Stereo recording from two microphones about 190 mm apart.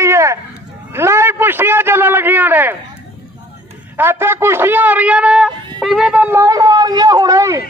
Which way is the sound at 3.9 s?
10° right (ahead or behind).